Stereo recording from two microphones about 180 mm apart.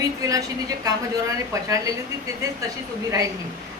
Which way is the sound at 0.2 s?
20° right (ahead or behind).